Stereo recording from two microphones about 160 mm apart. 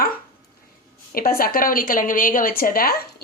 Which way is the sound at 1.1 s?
65° left (ahead or behind).